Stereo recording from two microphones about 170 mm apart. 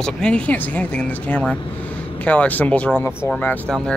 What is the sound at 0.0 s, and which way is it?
Speech, 5° left (ahead or behind).